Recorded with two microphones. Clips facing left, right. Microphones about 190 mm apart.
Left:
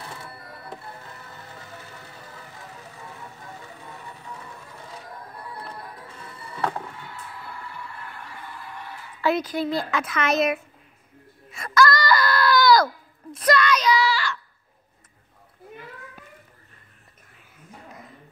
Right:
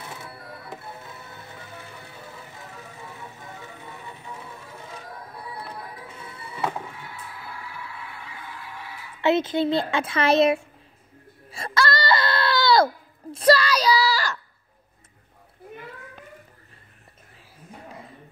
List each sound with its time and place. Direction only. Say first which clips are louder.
0.7 s music: left 1 dB; 5° right (ahead or behind)
5.3 s music: right 1 dB; 5° right (ahead or behind)
8.3 s goose: even; 90° right
8.7 s honk: left 1 dB; 5° right (ahead or behind)
9.2 s a child's voice: right 3 dB; 25° right (ahead or behind)
11.5 s a sound: left 4 dB; 30° right (ahead or behind)